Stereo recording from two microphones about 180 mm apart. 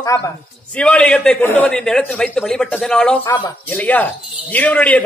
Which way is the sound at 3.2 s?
25° left (ahead or behind).